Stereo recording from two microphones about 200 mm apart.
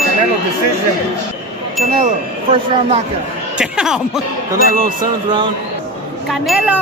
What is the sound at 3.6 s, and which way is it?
Speech, 5° right (ahead or behind).